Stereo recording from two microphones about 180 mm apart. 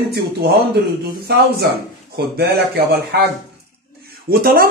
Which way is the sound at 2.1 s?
60° right (ahead or behind).